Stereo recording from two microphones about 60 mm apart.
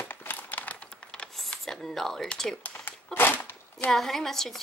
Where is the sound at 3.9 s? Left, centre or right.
Centre.